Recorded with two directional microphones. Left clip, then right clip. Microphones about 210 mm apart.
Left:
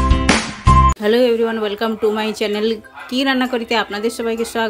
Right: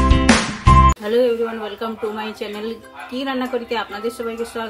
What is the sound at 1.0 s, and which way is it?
A woman's voice, 50° left (ahead or behind).